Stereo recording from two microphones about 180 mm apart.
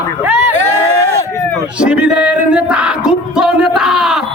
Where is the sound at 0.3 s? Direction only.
15° right (ahead or behind).